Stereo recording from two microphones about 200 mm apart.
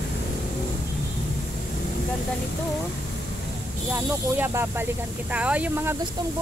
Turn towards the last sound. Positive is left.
turn(degrees=-10)  # may be behind; listen again after turning